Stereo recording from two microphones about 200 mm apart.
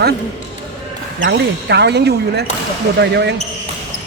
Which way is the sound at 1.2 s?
60° right (ahead or behind).